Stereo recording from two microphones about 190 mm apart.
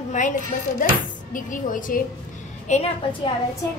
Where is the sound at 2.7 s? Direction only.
35° left (ahead or behind).